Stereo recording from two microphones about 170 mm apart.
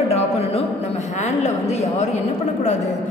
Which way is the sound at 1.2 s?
40° left (ahead or behind).